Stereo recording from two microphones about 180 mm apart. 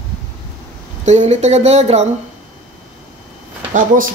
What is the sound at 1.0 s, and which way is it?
Speech, 40° right (ahead or behind).